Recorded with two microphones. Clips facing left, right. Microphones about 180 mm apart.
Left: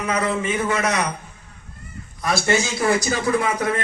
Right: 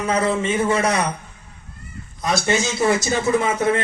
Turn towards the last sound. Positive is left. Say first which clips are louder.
# right 3 dB
turn(degrees=-25)  # may be behind; listen again after turning